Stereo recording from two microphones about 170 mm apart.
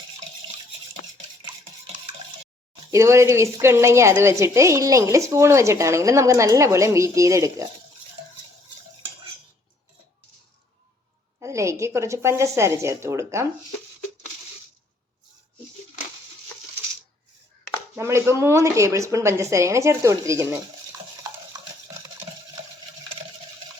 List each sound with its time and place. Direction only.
2.9 s a woman's voice: 15° right (ahead or behind)
11.3 s a woman's voice: 15° right (ahead or behind)
17.9 s a woman's voice: 15° right (ahead or behind)